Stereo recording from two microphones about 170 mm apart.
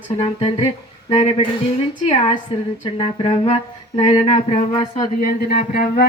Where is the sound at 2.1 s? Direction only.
30° left (ahead or behind).